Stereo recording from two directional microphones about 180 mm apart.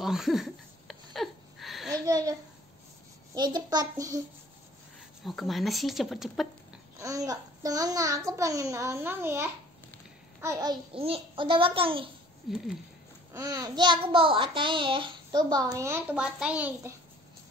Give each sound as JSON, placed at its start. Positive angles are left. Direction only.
{"t": 0.0, "sound": "a sound", "side_deg": 0}
{"t": 2.0, "sound": "speech", "side_deg": -20}
{"t": 3.3, "sound": "a child's voice", "side_deg": -25}
{"t": 5.2, "sound": "speech", "side_deg": 0}
{"t": 7.0, "sound": "a child's voice", "side_deg": -20}
{"t": 11.0, "sound": "a child's voice", "side_deg": -30}
{"t": 12.4, "sound": "speech", "side_deg": 0}
{"t": 13.3, "sound": "a child's voice", "side_deg": -20}